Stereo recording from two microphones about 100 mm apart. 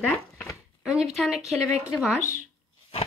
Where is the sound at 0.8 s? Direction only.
5° right (ahead or behind).